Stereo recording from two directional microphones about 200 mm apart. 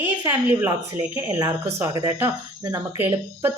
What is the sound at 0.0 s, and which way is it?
A woman's voice, 10° right (ahead or behind).